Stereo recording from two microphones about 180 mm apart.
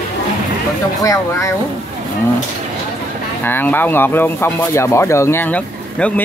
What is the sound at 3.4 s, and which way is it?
Speech, 10° left (ahead or behind).